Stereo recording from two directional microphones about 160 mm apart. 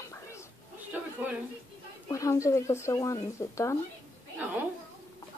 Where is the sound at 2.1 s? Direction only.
20° left (ahead or behind).